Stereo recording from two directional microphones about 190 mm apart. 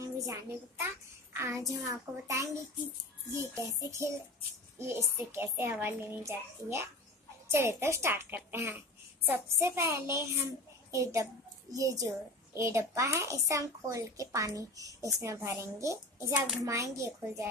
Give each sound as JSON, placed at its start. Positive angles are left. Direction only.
{"t": 0.0, "sound": "a child's voice", "side_deg": -15}
{"t": 3.5, "sound": "speech", "side_deg": -15}